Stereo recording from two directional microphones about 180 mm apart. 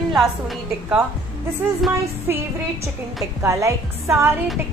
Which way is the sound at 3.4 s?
15° right (ahead or behind).